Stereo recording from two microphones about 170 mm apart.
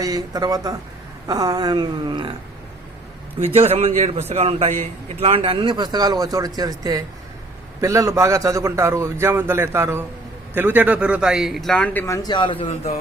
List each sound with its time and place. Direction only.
0.0 s a man's voice: 20° right (ahead or behind)
3.4 s a man's voice: 35° right (ahead or behind); by 12.0 s 5° left (ahead or behind)
12.0 s speech: 20° left (ahead or behind)